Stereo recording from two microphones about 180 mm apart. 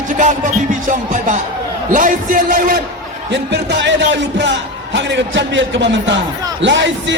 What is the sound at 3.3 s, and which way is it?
A man's voice, 75° right (ahead or behind).